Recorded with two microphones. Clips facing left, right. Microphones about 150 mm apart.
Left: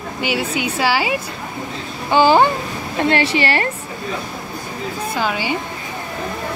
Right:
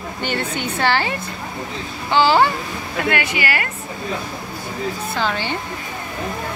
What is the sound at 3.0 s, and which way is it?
Speech, 30° left (ahead or behind).